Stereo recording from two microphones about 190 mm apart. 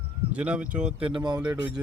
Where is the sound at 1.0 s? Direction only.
25° right (ahead or behind).